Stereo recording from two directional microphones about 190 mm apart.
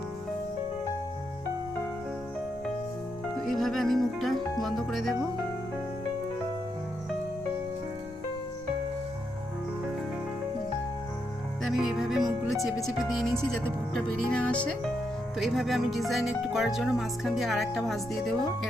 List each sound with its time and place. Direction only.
3.3 s speech: centre (ahead or behind)
11.6 s music: centre (ahead or behind)
13.9 s speech: 5° left (ahead or behind)